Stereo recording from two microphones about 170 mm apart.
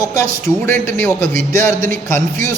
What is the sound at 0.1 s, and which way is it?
A man's voice, 15° left (ahead or behind).